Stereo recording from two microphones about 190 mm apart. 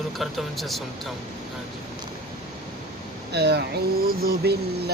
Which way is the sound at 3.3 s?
60° right (ahead or behind).